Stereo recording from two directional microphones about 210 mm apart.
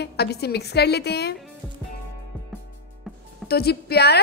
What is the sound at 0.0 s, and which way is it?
A woman's voice, 50° left (ahead or behind).